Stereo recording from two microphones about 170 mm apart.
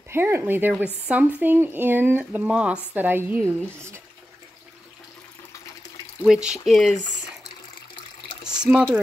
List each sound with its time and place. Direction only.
0.1 s speech: 15° right (ahead or behind)
6.2 s speech: 5° right (ahead or behind)
8.6 s speech: centre (ahead or behind)